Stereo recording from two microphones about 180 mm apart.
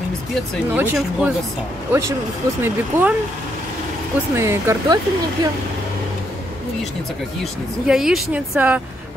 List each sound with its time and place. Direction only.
0.7 s a woman's voice: 10° right (ahead or behind)
4.4 s speech: 15° right (ahead or behind)
7.8 s a woman's voice: 5° right (ahead or behind)